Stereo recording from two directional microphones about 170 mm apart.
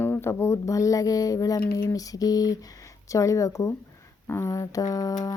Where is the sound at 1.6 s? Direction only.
60° left (ahead or behind).